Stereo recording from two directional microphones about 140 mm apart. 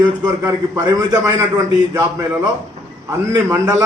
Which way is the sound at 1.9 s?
20° right (ahead or behind).